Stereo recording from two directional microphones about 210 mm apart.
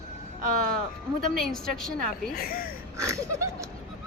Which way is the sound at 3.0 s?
15° right (ahead or behind).